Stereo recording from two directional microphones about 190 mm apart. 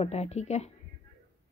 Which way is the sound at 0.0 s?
35° left (ahead or behind).